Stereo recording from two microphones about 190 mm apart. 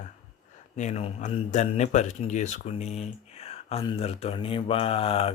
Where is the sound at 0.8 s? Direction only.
35° left (ahead or behind).